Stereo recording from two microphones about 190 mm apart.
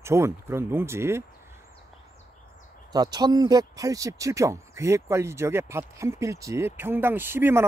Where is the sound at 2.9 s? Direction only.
20° right (ahead or behind).